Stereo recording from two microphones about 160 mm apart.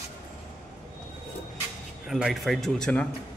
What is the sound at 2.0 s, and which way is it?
A man's voice, centre (ahead or behind).